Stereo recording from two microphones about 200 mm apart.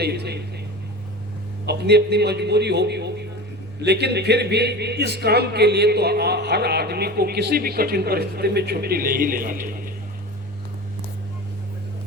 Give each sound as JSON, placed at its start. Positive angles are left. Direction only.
{"t": 0.0, "sound": "a man's voice", "side_deg": -55}
{"t": 1.6, "sound": "a man's voice", "side_deg": -55}